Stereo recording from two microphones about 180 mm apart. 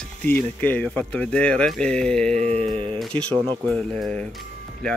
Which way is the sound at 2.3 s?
35° right (ahead or behind).